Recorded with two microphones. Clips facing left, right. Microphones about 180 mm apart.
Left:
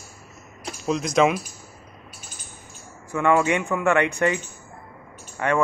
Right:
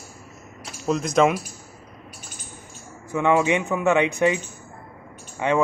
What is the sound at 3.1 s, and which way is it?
Speech, 20° right (ahead or behind).